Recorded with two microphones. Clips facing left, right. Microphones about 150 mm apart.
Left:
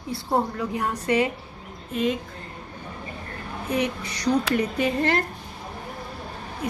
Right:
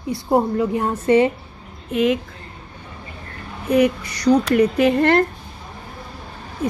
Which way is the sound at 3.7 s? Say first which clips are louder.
Right 10 dB; 65° right (ahead or behind).